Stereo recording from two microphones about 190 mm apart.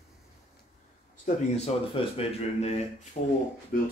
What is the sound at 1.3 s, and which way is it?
Speech, 40° left (ahead or behind).